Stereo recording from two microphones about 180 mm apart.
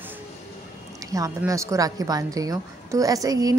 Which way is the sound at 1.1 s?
20° right (ahead or behind).